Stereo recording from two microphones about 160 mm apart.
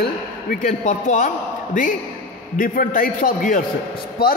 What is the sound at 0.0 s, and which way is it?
A man's voice, 60° left (ahead or behind).